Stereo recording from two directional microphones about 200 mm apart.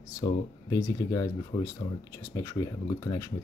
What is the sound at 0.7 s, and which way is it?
Speech, 15° left (ahead or behind).